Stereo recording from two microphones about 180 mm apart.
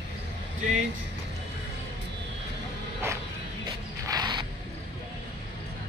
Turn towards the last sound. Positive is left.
turn(degrees=-25)  # may be behind; listen again after turning